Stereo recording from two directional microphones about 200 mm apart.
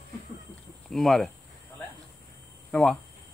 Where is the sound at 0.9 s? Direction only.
Centre (ahead or behind).